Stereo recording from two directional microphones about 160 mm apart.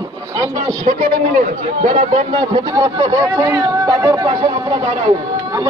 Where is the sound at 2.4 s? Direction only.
25° right (ahead or behind).